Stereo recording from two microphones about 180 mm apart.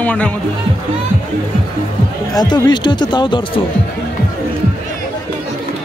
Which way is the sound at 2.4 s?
25° left (ahead or behind).